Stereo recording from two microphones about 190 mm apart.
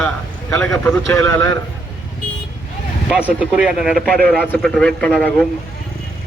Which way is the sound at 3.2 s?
5° right (ahead or behind).